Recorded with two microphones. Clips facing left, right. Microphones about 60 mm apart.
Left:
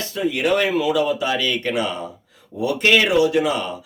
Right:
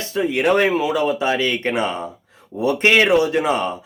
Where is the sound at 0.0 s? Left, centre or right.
Right.